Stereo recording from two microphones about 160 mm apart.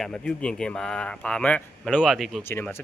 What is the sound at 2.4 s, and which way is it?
Speech, 15° left (ahead or behind).